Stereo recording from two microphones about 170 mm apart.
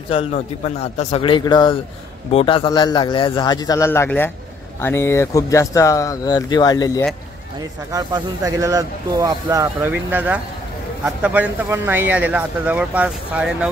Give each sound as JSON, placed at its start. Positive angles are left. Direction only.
{"t": 0.1, "sound": "a man's voice", "side_deg": 35}
{"t": 7.9, "sound": "speech", "side_deg": -20}